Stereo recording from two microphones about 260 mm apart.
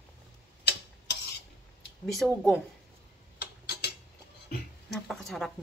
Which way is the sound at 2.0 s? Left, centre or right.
Centre.